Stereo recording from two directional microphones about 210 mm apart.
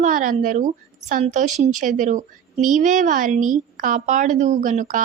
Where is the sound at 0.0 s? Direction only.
35° right (ahead or behind).